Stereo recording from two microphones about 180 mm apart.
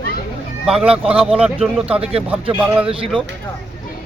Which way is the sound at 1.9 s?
30° right (ahead or behind).